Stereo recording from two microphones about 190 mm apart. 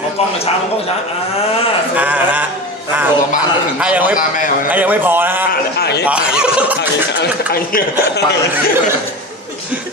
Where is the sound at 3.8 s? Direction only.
5° right (ahead or behind).